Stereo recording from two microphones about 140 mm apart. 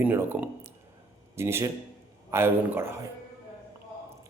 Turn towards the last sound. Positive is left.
turn(degrees=-20)  # may be behind; listen again after turning